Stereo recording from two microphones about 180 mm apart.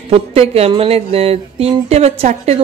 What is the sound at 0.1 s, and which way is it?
Speech, 35° right (ahead or behind).